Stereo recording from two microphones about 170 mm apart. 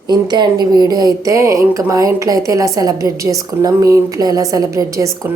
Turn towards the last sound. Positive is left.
turn(degrees=-20)  # may be behind; listen again after turning